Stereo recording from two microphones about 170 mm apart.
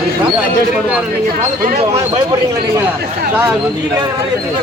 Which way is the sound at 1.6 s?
45° right (ahead or behind).